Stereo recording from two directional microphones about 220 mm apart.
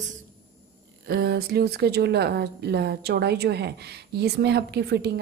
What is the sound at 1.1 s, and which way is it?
A woman's voice, 45° right (ahead or behind).